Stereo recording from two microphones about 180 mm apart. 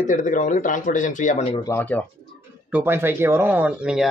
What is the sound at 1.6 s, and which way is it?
Speech, 15° left (ahead or behind).